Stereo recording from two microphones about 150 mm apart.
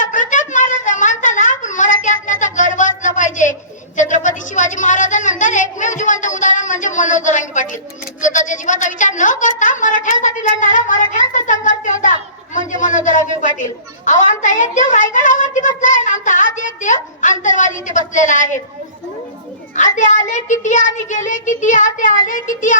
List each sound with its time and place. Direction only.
0.0 s a sound: 60° left (ahead or behind)
17.4 s a woman's voice: 55° left (ahead or behind)
19.7 s a woman's voice: 55° left (ahead or behind)